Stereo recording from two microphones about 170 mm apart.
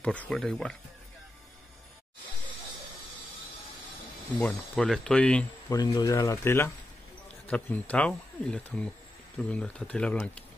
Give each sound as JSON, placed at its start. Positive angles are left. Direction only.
{"t": 0.0, "sound": "speech", "side_deg": 5}
{"t": 4.4, "sound": "speech", "side_deg": 5}
{"t": 5.7, "sound": "speech", "side_deg": 20}